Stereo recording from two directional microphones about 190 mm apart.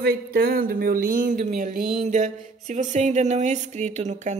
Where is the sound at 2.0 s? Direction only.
40° right (ahead or behind).